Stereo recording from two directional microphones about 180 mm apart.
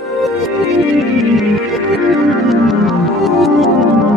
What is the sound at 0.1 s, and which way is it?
Music, centre (ahead or behind).